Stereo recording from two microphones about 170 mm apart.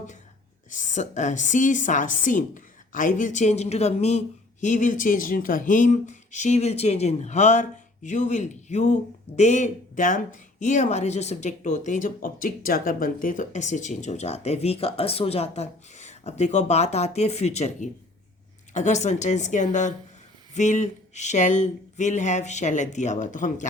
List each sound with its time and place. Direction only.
0.7 s speech: 45° left (ahead or behind)